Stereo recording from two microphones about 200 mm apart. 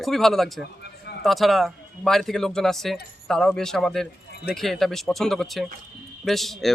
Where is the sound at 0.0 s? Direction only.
Centre (ahead or behind).